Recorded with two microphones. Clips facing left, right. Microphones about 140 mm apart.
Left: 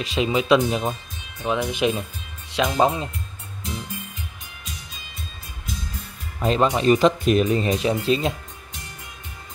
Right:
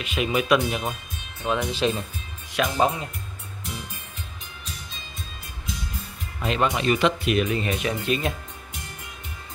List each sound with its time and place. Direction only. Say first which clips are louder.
0.0 s speech: left 3 dB; 30° left (ahead or behind)
1.4 s speech: left 2 dB; 15° left (ahead or behind)
6.4 s speech: left 4 dB; 35° left (ahead or behind)